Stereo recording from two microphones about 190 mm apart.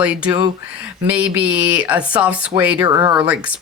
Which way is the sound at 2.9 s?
20° right (ahead or behind).